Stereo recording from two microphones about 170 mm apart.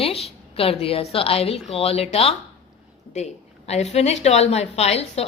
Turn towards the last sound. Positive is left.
turn(degrees=40)  # may be behind; listen again after turning